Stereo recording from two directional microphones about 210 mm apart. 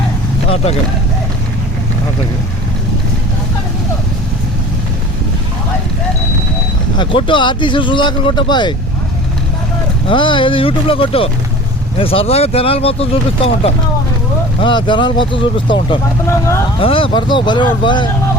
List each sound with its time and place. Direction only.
0.5 s speech: 30° left (ahead or behind)
6.9 s speech: 25° left (ahead or behind)
10.1 s speech: 25° left (ahead or behind)